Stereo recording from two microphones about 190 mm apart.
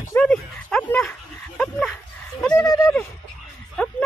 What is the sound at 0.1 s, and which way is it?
Dog, 5° left (ahead or behind).